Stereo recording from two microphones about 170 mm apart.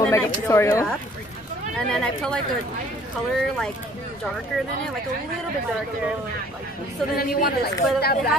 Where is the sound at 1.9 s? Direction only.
5° left (ahead or behind).